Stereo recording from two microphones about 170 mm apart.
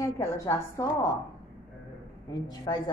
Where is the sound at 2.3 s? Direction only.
25° left (ahead or behind).